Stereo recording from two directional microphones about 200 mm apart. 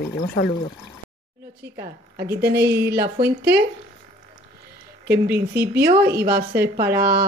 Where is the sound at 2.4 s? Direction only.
55° right (ahead or behind).